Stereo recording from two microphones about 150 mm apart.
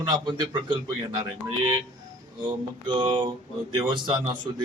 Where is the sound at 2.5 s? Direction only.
35° right (ahead or behind).